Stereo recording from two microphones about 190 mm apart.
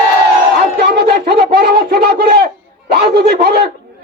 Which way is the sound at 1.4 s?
55° right (ahead or behind).